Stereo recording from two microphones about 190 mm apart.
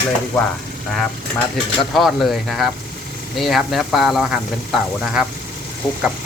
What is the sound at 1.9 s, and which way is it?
Speech, centre (ahead or behind).